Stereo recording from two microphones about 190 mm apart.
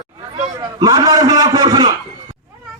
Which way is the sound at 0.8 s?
20° right (ahead or behind).